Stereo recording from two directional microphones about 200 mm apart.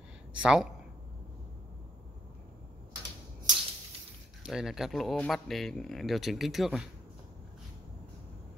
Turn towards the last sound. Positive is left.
turn(degrees=0)  # may be behind; listen again after turning